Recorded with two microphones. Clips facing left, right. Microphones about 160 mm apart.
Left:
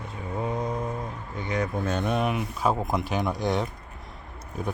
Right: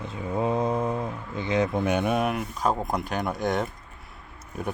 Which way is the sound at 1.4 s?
25° right (ahead or behind).